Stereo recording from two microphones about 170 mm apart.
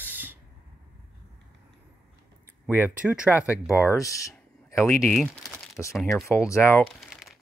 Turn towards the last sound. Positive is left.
turn(degrees=0)  # may be behind; listen again after turning